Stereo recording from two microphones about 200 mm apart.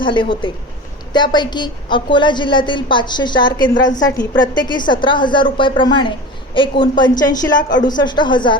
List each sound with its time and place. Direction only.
0.0 s a woman's voice: 25° left (ahead or behind)